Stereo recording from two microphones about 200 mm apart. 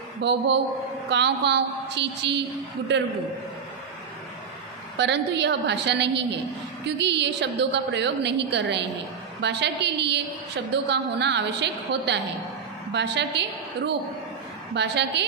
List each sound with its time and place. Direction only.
0.2 s a woman's voice: 60° right (ahead or behind)
4.9 s a woman's voice: 60° right (ahead or behind)